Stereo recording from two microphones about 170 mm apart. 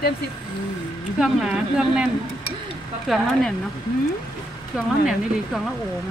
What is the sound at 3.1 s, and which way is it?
Speech, centre (ahead or behind).